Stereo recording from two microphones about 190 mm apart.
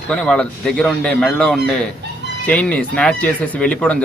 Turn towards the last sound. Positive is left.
turn(degrees=5)  # may be behind; listen again after turning